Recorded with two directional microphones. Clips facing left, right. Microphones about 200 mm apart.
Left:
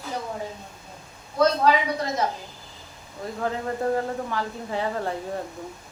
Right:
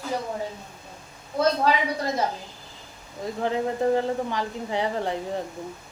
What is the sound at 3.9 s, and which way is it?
A woman's voice, 15° right (ahead or behind).